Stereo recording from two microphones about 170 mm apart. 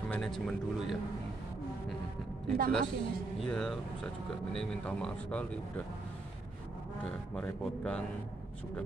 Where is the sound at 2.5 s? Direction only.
60° right (ahead or behind).